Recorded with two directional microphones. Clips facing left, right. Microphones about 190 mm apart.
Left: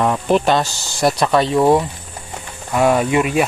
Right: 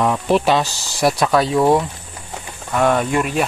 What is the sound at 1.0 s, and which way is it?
Speech, centre (ahead or behind).